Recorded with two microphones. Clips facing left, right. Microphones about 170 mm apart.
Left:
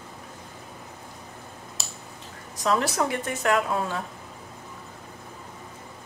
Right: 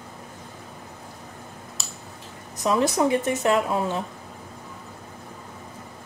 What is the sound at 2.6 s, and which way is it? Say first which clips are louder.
Speech: right 3 dB; 20° right (ahead or behind).